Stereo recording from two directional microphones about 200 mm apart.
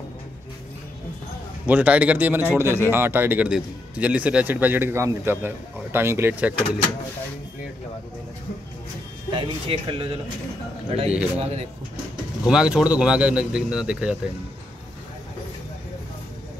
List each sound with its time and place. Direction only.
1.7 s a man's voice: 5° right (ahead or behind)
9.3 s speech: 25° right (ahead or behind)
11.3 s speech: 30° right (ahead or behind)
12.4 s speech: 5° right (ahead or behind)